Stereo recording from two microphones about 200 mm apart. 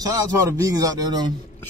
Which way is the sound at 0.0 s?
15° right (ahead or behind).